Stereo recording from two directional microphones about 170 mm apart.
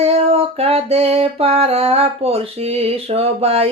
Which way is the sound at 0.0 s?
35° right (ahead or behind).